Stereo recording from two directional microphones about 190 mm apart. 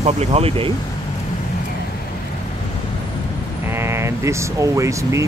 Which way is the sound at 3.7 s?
15° right (ahead or behind).